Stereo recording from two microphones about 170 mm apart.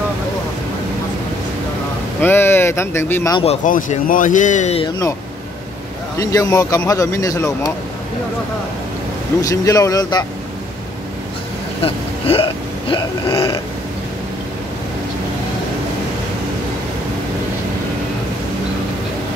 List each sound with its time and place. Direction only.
2.1 s speech: 15° left (ahead or behind)
3.6 s speech: 50° left (ahead or behind)
4.8 s speech: 20° left (ahead or behind)
6.1 s speech: 20° left (ahead or behind)
9.4 s speech: 20° left (ahead or behind)
11.8 s speech: 35° left (ahead or behind)